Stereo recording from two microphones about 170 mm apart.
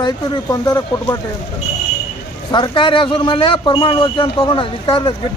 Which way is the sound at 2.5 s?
30° left (ahead or behind).